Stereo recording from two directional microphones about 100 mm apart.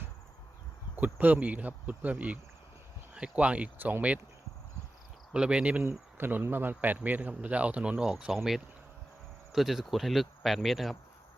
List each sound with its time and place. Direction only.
0.9 s a man's voice: 15° right (ahead or behind)
5.3 s a man's voice: 10° right (ahead or behind)
6.1 s a man's voice: 20° right (ahead or behind)
9.5 s speech: 5° right (ahead or behind)